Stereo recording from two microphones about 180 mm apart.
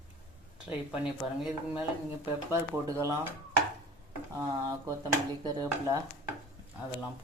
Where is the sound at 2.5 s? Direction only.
15° right (ahead or behind).